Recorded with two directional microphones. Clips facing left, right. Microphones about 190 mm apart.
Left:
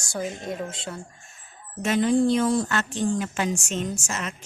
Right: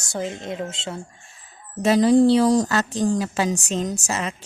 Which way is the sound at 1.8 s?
35° right (ahead or behind).